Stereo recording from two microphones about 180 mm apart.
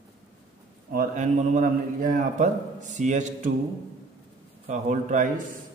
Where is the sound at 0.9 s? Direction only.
45° right (ahead or behind).